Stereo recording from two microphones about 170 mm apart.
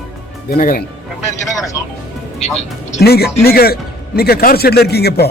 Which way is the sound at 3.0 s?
70° left (ahead or behind).